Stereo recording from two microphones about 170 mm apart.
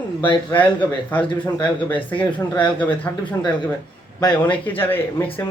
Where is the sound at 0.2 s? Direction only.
30° left (ahead or behind).